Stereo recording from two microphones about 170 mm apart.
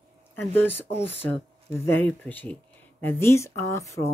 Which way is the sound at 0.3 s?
10° left (ahead or behind).